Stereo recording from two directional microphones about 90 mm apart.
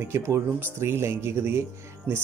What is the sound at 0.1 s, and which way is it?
Speech, 25° right (ahead or behind).